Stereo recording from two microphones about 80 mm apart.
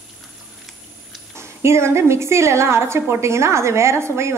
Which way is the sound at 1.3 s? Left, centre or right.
Right.